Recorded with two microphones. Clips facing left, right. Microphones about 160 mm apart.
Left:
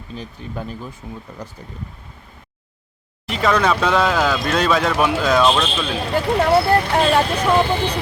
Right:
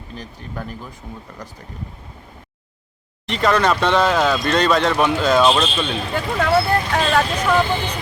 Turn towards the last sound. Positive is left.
turn(degrees=30)  # may be behind; listen again after turning